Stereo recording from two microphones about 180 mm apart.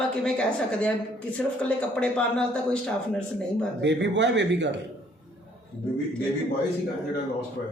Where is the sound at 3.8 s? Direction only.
80° right.